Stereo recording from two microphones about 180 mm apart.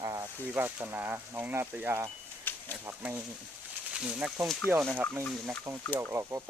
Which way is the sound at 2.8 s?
10° right (ahead or behind).